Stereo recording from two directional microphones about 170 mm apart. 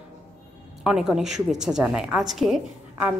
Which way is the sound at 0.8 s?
5° right (ahead or behind).